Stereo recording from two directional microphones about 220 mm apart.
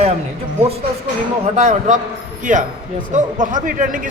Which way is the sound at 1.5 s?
35° right (ahead or behind).